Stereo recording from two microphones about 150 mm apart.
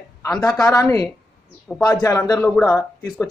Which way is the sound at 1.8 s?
30° left (ahead or behind).